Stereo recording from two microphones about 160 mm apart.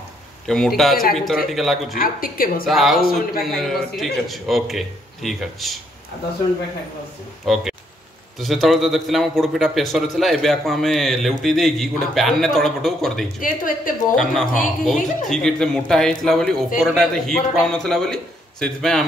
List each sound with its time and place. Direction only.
0.5 s a man's voice: centre (ahead or behind)
2.0 s speech: 65° left (ahead or behind)
2.6 s a man's voice: centre (ahead or behind)
3.0 s a man's voice: 65° left (ahead or behind)
3.4 s a man's voice: centre (ahead or behind)
7.4 s a man's voice: centre (ahead or behind)
13.4 s speech: 60° left (ahead or behind)
14.9 s a man's voice: centre (ahead or behind)